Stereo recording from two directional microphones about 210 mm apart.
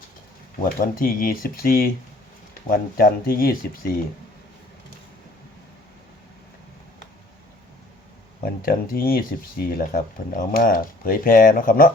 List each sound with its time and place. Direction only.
0.6 s speech: 40° left (ahead or behind)
8.6 s speech: 45° left (ahead or behind)